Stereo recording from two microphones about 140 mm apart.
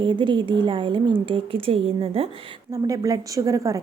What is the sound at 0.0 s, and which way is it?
A woman's voice, 35° right (ahead or behind).